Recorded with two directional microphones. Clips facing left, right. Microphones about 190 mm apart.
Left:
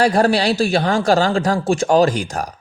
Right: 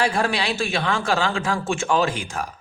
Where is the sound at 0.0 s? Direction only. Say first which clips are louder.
Left 7 dB; 40° left (ahead or behind).